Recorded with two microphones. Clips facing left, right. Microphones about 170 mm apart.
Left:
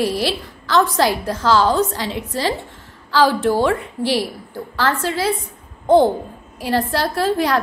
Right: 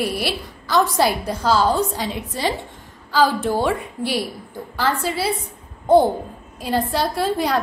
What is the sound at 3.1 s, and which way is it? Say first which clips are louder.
Speech: left 2 dB; 85° left.